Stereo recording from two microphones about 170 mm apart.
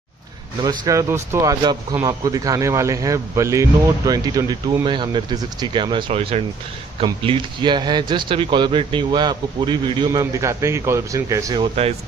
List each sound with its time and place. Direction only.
0.7 s speech: 20° right (ahead or behind)